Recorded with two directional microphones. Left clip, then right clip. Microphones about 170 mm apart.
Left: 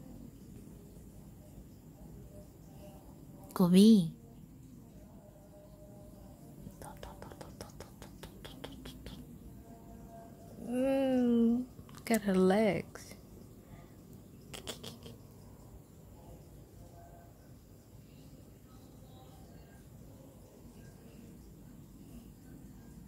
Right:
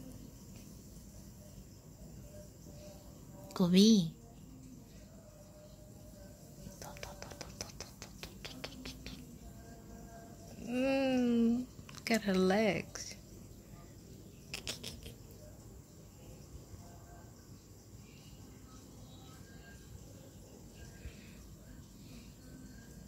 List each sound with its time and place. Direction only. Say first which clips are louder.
3.4 s a woman's voice: left 2 dB; 20° left (ahead or behind)
6.8 s whispering: right 1 dB; 10° left (ahead or behind)
10.7 s a sound: left 2 dB; 10° left (ahead or behind)
14.5 s creak: right 2 dB; 20° left (ahead or behind)